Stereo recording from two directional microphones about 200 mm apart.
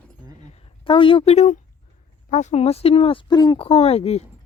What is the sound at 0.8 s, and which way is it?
Speech, 25° left (ahead or behind).